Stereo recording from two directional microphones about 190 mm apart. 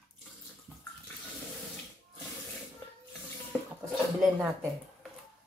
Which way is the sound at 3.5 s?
5° right (ahead or behind).